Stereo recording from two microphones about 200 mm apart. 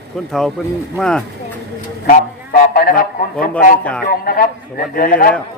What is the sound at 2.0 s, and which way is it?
A man's voice, 40° left (ahead or behind).